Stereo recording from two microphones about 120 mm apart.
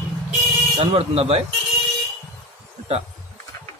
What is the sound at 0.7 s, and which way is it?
Speech, 60° right (ahead or behind).